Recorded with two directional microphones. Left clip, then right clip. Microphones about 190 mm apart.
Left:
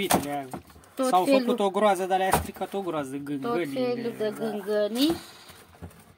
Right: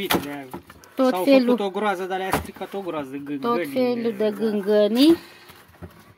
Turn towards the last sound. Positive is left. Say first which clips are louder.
# right 7 dB
turn(degrees=-65)  # may be behind; listen again after turning